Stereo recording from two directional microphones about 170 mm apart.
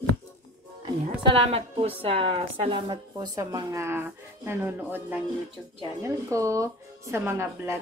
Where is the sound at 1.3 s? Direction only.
35° right (ahead or behind).